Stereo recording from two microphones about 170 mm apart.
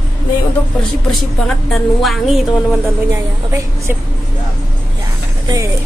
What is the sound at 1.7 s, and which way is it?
Speech, centre (ahead or behind).